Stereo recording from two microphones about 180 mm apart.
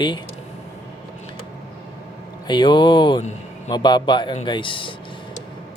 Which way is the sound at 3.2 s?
40° left (ahead or behind).